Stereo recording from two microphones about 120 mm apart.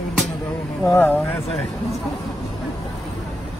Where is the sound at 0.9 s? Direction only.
15° left (ahead or behind).